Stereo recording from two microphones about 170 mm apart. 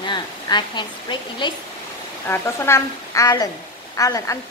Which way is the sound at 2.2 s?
15° left (ahead or behind).